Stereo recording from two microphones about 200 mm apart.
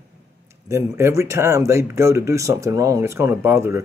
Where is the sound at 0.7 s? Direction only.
15° right (ahead or behind).